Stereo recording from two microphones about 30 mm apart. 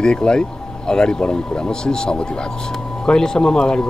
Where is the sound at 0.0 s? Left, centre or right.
Left.